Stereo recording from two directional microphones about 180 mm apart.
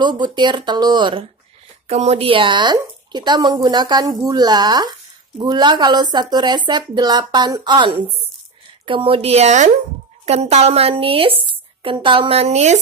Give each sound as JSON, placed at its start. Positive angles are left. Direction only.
{"t": 0.0, "sound": "speech", "side_deg": -25}
{"t": 1.9, "sound": "a woman's voice", "side_deg": -35}